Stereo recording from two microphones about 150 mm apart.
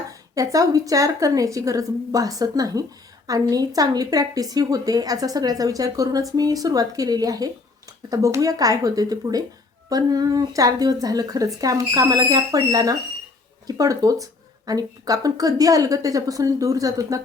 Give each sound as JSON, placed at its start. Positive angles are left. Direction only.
{"t": 0.1, "sound": "a woman's voice", "side_deg": -25}